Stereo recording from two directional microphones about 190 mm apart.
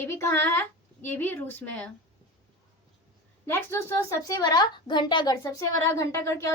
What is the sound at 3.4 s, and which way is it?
A woman's voice, 10° left (ahead or behind).